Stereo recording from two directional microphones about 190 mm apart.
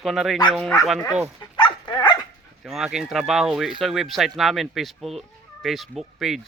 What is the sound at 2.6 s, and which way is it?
Speech, 5° right (ahead or behind).